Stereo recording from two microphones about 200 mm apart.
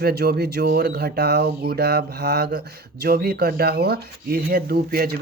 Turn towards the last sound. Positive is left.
turn(degrees=-50)  # may be behind; listen again after turning